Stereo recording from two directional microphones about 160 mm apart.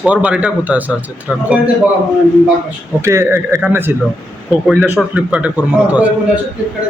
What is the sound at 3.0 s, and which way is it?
Speech, 15° right (ahead or behind).